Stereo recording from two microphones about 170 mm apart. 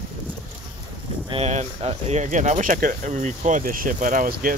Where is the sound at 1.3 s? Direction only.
40° right (ahead or behind).